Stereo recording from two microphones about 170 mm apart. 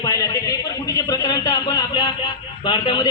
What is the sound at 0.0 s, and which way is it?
A man's voice, 20° left (ahead or behind).